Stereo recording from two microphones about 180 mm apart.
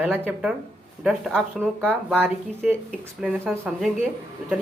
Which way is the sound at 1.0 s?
Centre (ahead or behind).